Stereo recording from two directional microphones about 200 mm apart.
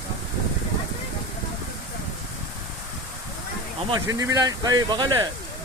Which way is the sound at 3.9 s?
15° right (ahead or behind).